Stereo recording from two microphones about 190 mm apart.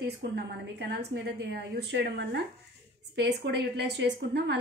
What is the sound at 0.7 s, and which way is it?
A woman's voice, 60° right (ahead or behind).